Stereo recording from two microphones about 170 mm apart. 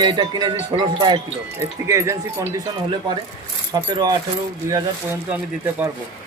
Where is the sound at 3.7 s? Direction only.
25° right (ahead or behind).